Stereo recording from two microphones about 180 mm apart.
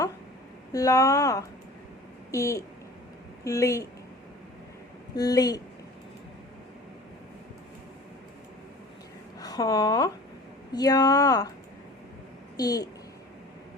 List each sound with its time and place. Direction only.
0.7 s speech: 20° left (ahead or behind)
5.1 s speech: 20° left (ahead or behind)
9.4 s speech: 20° left (ahead or behind)
12.5 s speech: 20° left (ahead or behind)